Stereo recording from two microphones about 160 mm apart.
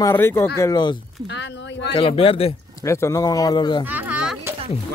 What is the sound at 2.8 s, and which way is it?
Speech, 20° left (ahead or behind).